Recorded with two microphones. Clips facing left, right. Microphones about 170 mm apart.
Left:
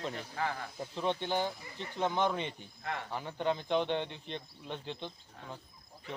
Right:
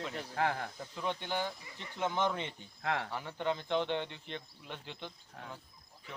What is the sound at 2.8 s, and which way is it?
Speech, 75° right (ahead or behind).